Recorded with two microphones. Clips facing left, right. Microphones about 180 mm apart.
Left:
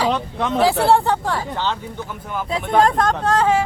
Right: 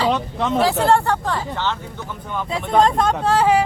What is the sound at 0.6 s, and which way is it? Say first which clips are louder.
Speech: left 2 dB; 15° left (ahead or behind).